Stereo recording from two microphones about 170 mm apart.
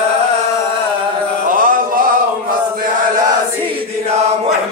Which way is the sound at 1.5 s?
55° right (ahead or behind).